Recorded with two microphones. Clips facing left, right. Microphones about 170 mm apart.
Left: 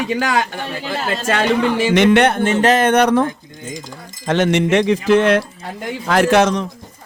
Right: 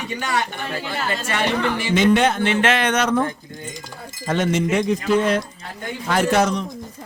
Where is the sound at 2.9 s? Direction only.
65° left (ahead or behind).